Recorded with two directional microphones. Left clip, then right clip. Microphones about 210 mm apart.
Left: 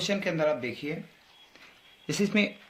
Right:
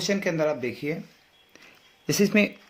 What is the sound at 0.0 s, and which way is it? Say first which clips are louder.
Speech: right 2 dB; 35° right (ahead or behind).